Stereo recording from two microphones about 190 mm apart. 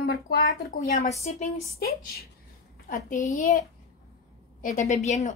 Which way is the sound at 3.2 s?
40° left (ahead or behind).